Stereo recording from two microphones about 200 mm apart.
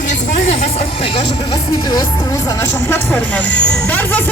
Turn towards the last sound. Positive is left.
turn(degrees=10)  # may be behind; listen again after turning